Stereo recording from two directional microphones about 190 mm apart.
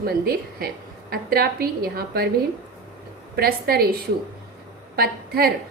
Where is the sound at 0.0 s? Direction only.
50° right (ahead or behind).